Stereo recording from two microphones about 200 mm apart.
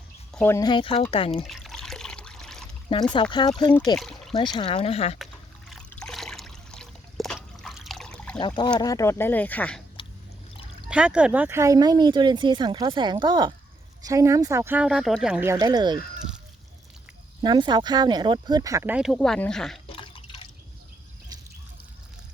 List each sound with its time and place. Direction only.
0.3 s speech: 10° left (ahead or behind); by 1.5 s 25° left (ahead or behind)
1.5 s water: centre (ahead or behind)
3.2 s speech: 25° left (ahead or behind)
3.9 s pour: centre (ahead or behind)
4.4 s speech: 20° left (ahead or behind)
5.2 s trickle: centre (ahead or behind)
8.4 s speech: 25° left (ahead or behind); by 9.8 s 5° left (ahead or behind)
10.8 s speech: 5° right (ahead or behind); by 16.0 s 20° right (ahead or behind)
16.1 s a sound: 5° right (ahead or behind)
17.4 s speech: 20° right (ahead or behind); by 19.8 s centre (ahead or behind)
19.9 s drip: 25° left (ahead or behind)